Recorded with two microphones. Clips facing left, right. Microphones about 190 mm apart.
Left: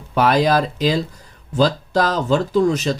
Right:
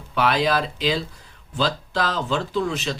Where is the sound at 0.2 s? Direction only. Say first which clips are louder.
Left 5 dB; 45° left (ahead or behind).